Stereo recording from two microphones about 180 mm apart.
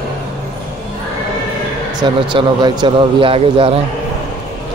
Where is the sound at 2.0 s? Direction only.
25° right (ahead or behind).